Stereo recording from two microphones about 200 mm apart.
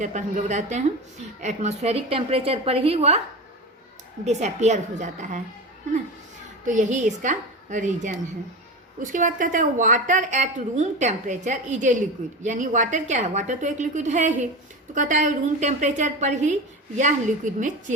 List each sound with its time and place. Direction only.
0.0 s a woman's voice: 35° right (ahead or behind)
4.3 s a woman's voice: 35° right (ahead or behind)
6.7 s a woman's voice: 40° right (ahead or behind)